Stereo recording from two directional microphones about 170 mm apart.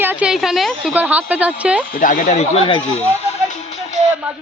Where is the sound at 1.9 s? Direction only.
50° left (ahead or behind).